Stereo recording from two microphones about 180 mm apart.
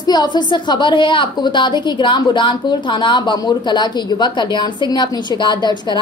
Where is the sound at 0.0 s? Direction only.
25° left (ahead or behind).